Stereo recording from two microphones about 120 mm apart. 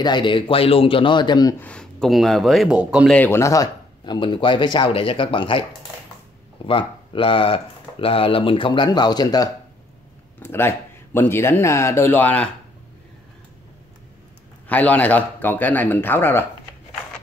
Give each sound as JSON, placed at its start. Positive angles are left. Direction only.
{"t": 0.0, "sound": "speech", "side_deg": 40}
{"t": 1.6, "sound": "speech", "side_deg": 10}
{"t": 3.3, "sound": "speech", "side_deg": 25}
{"t": 10.4, "sound": "speech", "side_deg": 20}
{"t": 14.7, "sound": "a man's voice", "side_deg": 15}